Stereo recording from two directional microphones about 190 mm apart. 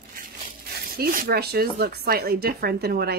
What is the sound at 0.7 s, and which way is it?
Speech, 55° right (ahead or behind).